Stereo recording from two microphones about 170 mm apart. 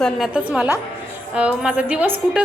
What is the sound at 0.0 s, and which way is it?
A woman's voice, 5° right (ahead or behind).